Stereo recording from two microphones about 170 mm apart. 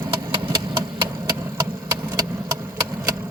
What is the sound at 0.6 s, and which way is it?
Engine, 25° right (ahead or behind).